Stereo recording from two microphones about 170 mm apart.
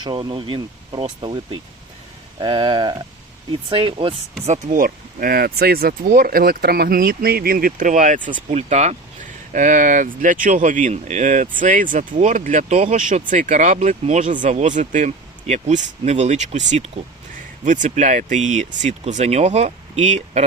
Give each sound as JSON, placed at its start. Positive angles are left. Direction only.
{"t": 0.0, "sound": "speech", "side_deg": -30}
{"t": 4.4, "sound": "speech", "side_deg": -40}
{"t": 4.8, "sound": "speech", "side_deg": -60}